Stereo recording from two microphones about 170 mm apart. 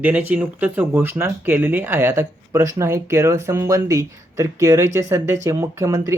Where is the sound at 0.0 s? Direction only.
10° right (ahead or behind).